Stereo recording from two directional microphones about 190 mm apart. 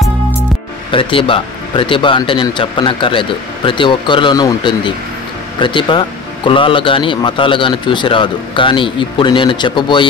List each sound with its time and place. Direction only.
0.9 s speech: 30° left (ahead or behind)